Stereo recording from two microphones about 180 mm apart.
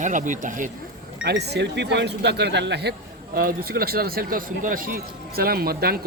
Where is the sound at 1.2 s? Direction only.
65° right (ahead or behind).